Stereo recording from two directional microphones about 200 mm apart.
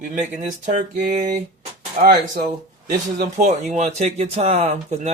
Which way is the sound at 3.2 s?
40° right (ahead or behind).